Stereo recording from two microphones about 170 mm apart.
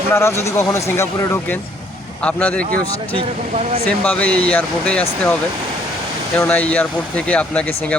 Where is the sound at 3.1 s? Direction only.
35° right (ahead or behind).